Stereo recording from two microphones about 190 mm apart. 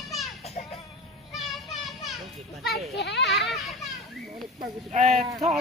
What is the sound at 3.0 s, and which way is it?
Speech, 65° left (ahead or behind).